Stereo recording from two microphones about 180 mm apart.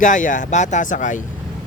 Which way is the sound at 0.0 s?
45° left (ahead or behind).